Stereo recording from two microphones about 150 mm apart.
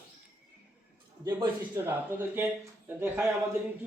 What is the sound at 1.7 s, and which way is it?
Speech, 15° right (ahead or behind).